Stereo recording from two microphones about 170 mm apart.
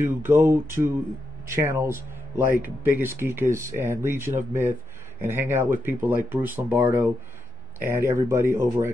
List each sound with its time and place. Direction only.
0.0 s speech: 15° right (ahead or behind)